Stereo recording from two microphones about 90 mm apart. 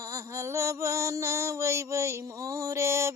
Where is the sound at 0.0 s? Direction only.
35° right (ahead or behind).